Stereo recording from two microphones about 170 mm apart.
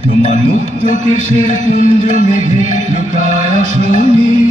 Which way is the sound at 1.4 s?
35° right (ahead or behind).